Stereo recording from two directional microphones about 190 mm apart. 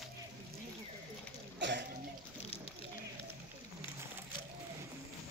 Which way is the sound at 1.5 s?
65° right (ahead or behind).